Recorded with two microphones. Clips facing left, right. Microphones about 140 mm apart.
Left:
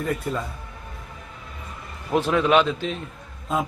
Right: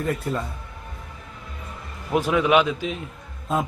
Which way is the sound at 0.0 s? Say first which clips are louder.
Right 1 dB; centre (ahead or behind).